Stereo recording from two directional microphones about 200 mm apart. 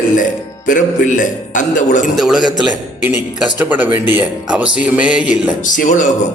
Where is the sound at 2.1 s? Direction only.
Centre (ahead or behind).